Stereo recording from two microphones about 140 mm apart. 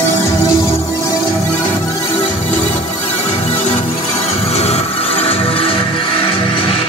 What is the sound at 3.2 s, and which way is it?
Music, 50° left (ahead or behind).